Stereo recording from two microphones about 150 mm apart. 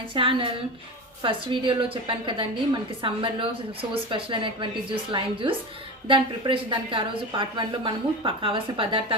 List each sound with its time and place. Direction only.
0.1 s a woman's voice: 35° right (ahead or behind)